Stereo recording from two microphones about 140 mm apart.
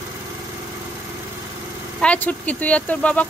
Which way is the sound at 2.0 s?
10° left (ahead or behind).